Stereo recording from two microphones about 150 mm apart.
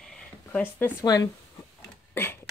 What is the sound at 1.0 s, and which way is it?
Speech, 25° left (ahead or behind).